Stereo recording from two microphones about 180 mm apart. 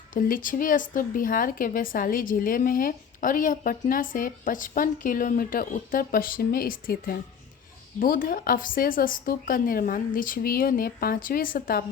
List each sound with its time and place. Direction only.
0.1 s a woman's voice: 50° left (ahead or behind)